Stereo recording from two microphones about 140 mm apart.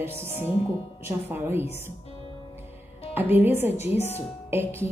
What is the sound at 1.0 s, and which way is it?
Speech, 15° right (ahead or behind).